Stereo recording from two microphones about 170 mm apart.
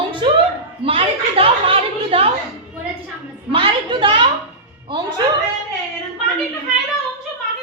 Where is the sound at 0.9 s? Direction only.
35° right (ahead or behind).